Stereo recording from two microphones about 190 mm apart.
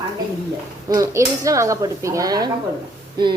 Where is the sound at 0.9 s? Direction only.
20° right (ahead or behind).